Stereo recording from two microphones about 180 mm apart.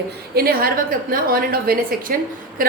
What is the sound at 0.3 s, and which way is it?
A woman's voice, 55° right (ahead or behind).